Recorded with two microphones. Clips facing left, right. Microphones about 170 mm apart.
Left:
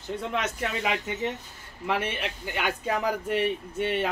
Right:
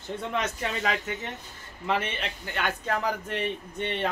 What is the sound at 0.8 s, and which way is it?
A man's voice, 15° left (ahead or behind).